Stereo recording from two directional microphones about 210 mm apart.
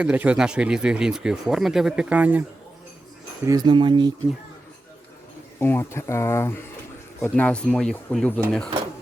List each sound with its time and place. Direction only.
0.0 s speech: 5° right (ahead or behind)
3.4 s speech: 20° right (ahead or behind)
5.5 s speech: 10° left (ahead or behind)